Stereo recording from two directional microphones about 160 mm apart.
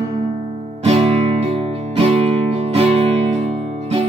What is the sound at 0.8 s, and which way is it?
Music, 40° right (ahead or behind).